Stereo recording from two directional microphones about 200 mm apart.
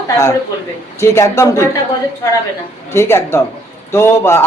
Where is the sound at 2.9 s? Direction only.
10° left (ahead or behind).